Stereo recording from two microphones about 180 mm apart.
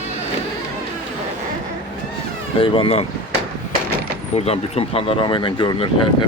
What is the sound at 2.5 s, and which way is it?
Speech, 30° left (ahead or behind).